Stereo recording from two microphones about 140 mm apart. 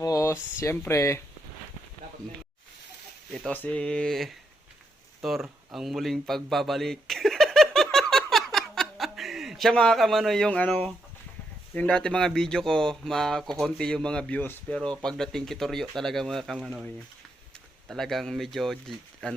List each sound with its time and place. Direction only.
0.0 s a sound: 20° left (ahead or behind)
0.6 s speech: 20° left (ahead or behind)
3.3 s speech: 10° left (ahead or behind)
5.2 s a sound: centre (ahead or behind)
11.7 s speech: 10° left (ahead or behind)
17.8 s speech: centre (ahead or behind)